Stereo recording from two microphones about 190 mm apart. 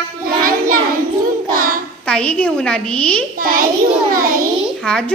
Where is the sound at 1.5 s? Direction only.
45° right (ahead or behind).